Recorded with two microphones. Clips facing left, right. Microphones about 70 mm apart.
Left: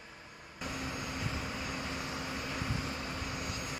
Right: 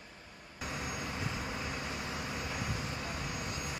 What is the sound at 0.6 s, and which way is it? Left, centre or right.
Vehicle, right.